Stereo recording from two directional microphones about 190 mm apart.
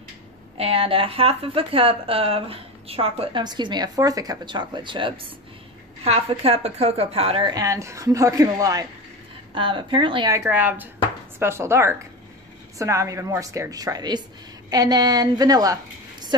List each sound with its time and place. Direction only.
0.6 s a woman's voice: 30° right (ahead or behind)